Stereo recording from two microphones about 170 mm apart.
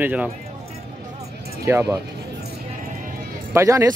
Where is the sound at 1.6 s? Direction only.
15° right (ahead or behind).